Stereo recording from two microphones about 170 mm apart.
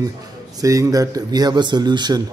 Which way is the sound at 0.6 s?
20° right (ahead or behind).